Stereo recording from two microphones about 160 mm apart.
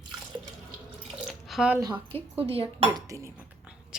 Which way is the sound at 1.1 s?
Centre (ahead or behind).